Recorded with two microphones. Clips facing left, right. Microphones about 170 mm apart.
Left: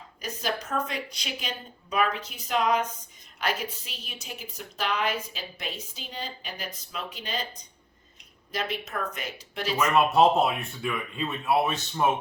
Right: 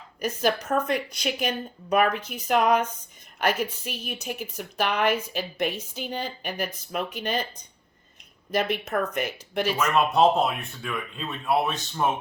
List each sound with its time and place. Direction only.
0.2 s a woman's voice: 55° right (ahead or behind)
8.5 s a woman's voice: 55° right (ahead or behind)
9.8 s speech: 5° left (ahead or behind)